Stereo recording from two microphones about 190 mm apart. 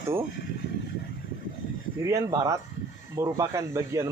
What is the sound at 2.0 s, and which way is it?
Speech, 15° right (ahead or behind).